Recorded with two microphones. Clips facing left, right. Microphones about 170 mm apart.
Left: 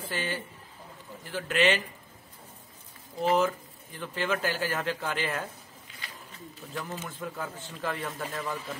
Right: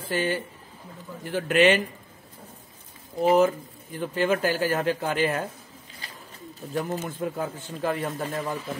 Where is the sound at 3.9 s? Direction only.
45° right (ahead or behind).